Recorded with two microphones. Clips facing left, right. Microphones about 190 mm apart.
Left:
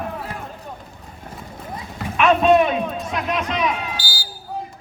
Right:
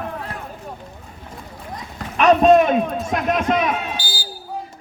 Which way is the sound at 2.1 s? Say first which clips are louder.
Right 2 dB; 40° right (ahead or behind).